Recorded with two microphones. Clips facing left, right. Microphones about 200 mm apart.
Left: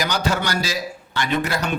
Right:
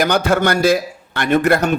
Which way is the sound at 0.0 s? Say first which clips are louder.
Right 7 dB; 55° right (ahead or behind).